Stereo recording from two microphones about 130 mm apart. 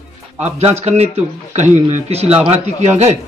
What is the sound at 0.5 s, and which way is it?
Speech, 55° right (ahead or behind).